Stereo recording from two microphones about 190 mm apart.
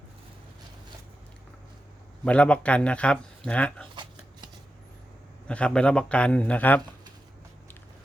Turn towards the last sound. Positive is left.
turn(degrees=10)  # may be behind; listen again after turning